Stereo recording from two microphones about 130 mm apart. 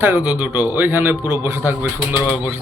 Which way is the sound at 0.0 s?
15° right (ahead or behind).